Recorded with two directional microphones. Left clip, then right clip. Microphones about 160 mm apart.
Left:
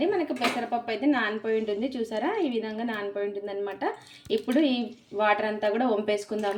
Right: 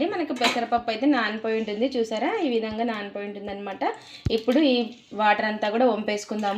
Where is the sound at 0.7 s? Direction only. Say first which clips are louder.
Right 4 dB; 35° right (ahead or behind).